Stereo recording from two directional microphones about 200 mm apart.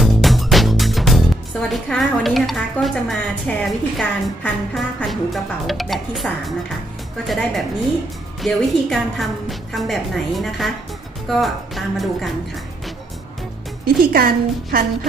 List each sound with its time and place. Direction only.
0.0 s music: centre (ahead or behind)
4.4 s a woman's voice: 5° left (ahead or behind)
13.8 s a woman's voice: 50° right (ahead or behind)